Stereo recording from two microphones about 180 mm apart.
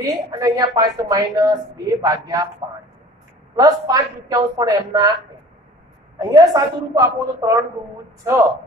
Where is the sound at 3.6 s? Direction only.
20° right (ahead or behind).